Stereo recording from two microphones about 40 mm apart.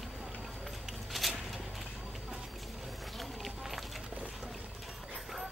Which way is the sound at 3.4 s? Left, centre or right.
Centre.